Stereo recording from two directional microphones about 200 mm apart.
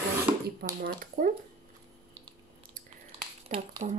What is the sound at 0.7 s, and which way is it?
Speech, 45° right (ahead or behind).